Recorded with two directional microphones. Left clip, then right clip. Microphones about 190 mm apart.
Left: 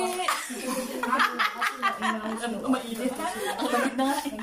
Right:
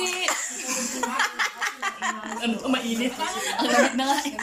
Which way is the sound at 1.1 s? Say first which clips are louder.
Left 2 dB; 35° right (ahead or behind).